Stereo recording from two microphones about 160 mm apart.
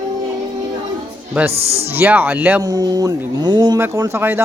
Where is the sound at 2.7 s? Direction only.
25° right (ahead or behind).